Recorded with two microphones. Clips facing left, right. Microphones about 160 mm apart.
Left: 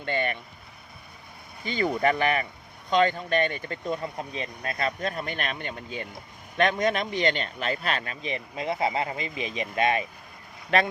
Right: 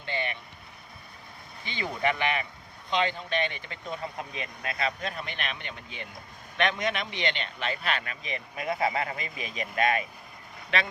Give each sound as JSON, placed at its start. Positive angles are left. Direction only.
{"t": 0.0, "sound": "vehicle", "side_deg": 50}
{"t": 1.6, "sound": "speech", "side_deg": 45}